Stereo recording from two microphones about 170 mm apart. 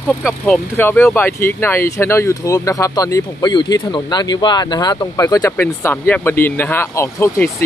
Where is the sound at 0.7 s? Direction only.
15° left (ahead or behind).